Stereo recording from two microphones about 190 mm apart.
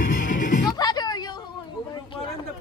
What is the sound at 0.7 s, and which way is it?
Music, 20° left (ahead or behind).